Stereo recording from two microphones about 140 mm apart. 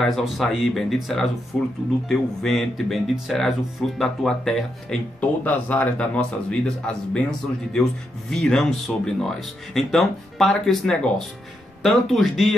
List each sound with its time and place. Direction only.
0.0 s speech: centre (ahead or behind)